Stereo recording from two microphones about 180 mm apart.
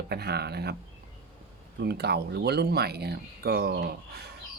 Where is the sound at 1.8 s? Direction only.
65° right (ahead or behind).